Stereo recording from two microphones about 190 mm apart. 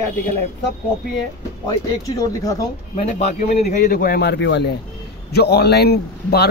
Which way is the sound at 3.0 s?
40° left (ahead or behind).